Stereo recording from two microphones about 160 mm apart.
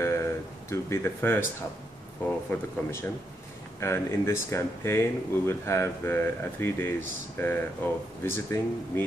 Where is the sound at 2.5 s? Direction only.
15° left (ahead or behind).